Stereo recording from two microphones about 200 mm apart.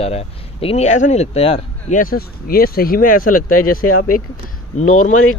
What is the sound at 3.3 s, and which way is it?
Speech, 90° left.